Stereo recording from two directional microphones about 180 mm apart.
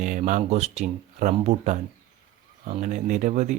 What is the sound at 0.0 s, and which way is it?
Speech, 40° right (ahead or behind).